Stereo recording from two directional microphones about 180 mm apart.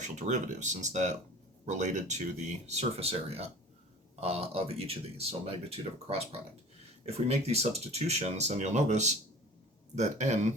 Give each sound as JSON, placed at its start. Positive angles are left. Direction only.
{"t": 0.0, "sound": "speech", "side_deg": -40}